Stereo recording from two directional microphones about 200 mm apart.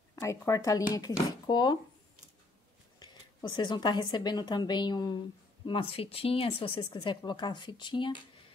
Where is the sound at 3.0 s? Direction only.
20° left (ahead or behind).